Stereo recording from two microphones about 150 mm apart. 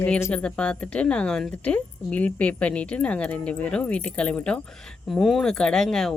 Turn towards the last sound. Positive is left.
turn(degrees=5)  # may be behind; listen again after turning